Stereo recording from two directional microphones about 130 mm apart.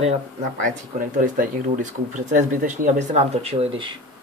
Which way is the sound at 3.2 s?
50° right (ahead or behind).